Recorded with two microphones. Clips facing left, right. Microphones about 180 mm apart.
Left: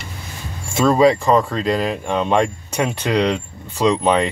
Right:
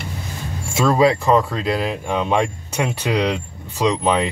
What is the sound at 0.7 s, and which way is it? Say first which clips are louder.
Speech: left 2 dB; 5° right (ahead or behind).